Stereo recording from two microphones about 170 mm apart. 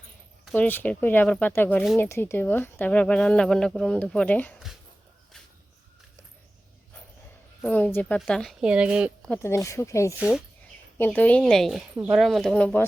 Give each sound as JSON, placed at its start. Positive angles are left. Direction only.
{"t": 0.5, "sound": "speech", "side_deg": 10}
{"t": 7.6, "sound": "a woman's voice", "side_deg": 10}
{"t": 9.3, "sound": "speech", "side_deg": 15}
{"t": 10.2, "sound": "speech", "side_deg": -5}
{"t": 10.9, "sound": "speech", "side_deg": 10}